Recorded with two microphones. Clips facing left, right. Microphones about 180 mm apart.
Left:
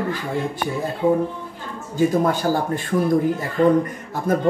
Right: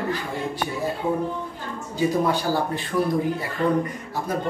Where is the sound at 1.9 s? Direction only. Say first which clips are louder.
Left 3 dB; 50° left (ahead or behind).